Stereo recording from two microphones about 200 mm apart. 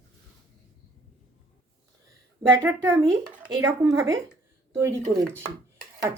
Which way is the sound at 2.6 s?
10° right (ahead or behind).